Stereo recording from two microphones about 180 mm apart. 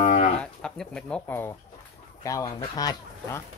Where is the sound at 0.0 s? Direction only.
40° left (ahead or behind).